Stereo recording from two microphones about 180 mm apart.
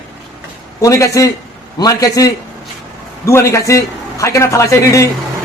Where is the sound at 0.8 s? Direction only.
15° left (ahead or behind).